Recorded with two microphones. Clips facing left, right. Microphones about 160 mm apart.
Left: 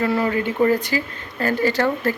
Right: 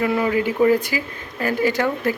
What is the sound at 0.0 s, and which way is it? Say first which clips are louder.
Speech: right 1 dB; 10° right (ahead or behind).